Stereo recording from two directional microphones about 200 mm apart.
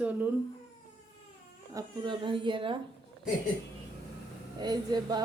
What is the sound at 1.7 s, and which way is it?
Speech, 25° right (ahead or behind).